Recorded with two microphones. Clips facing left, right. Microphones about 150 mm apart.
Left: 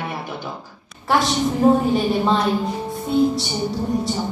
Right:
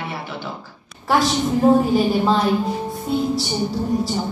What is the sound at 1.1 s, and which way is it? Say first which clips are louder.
A woman's voice: right 1 dB; centre (ahead or behind).